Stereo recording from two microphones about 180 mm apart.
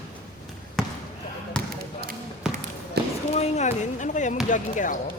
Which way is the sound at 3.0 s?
65° right (ahead or behind).